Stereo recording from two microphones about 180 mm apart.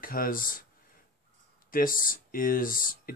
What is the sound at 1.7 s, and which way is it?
Speech, 50° left (ahead or behind).